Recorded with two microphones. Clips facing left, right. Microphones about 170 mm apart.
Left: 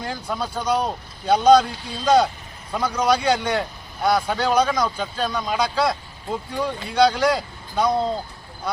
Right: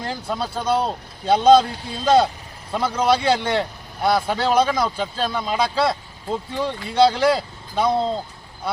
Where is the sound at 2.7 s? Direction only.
25° right (ahead or behind).